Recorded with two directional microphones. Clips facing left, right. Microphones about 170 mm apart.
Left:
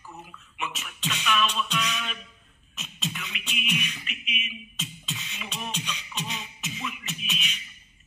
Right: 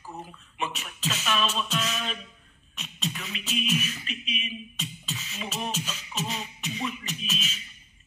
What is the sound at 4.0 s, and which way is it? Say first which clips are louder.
Beatboxing: right 3 dB; 35° right (ahead or behind).